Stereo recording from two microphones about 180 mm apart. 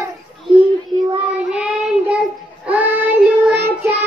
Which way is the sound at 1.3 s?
5° right (ahead or behind).